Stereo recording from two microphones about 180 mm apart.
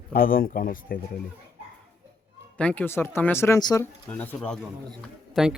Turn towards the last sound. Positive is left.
turn(degrees=-5)  # may be behind; listen again after turning